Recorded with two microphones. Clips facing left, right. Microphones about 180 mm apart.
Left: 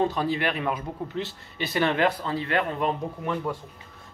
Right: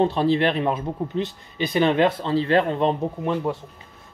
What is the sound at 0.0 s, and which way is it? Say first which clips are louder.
Speech: right 6 dB; 25° right (ahead or behind).